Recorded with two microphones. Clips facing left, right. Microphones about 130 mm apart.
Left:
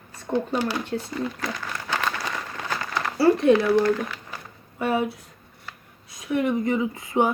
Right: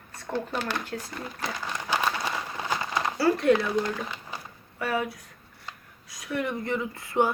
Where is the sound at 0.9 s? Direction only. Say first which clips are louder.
Left 6 dB; 25° left (ahead or behind).